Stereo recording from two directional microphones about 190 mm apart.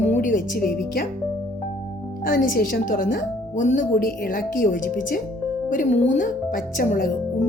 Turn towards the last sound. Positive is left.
turn(degrees=45)  # may be behind; listen again after turning